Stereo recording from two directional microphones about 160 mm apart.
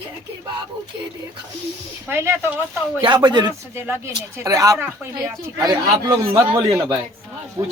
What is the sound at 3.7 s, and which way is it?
Speech, 15° right (ahead or behind).